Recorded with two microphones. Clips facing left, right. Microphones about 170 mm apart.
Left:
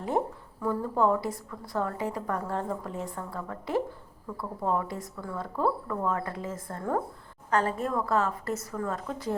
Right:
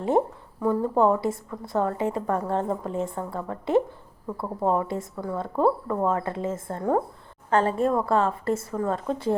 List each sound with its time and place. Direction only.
0.6 s a woman's voice: 25° right (ahead or behind)